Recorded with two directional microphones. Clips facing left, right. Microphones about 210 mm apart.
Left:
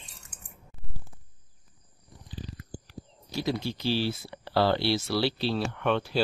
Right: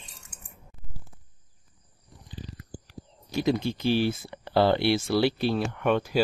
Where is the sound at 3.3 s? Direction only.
20° right (ahead or behind).